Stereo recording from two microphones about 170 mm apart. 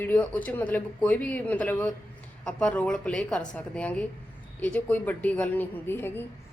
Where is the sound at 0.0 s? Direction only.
10° left (ahead or behind).